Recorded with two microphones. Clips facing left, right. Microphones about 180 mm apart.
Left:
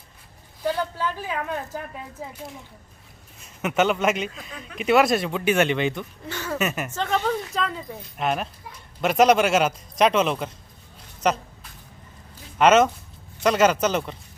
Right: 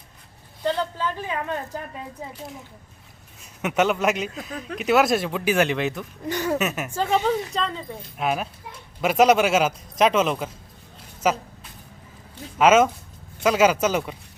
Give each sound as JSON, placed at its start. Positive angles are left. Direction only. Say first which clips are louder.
{"t": 0.6, "sound": "speech", "louder": "right 1 dB", "side_deg": 10}
{"t": 3.4, "sound": "speech", "louder": "even", "side_deg": 0}
{"t": 6.2, "sound": "a sound", "louder": "right 7 dB", "side_deg": -15}
{"t": 6.6, "sound": "speech", "louder": "right 1 dB", "side_deg": -5}
{"t": 12.5, "sound": "speech", "louder": "even", "side_deg": -5}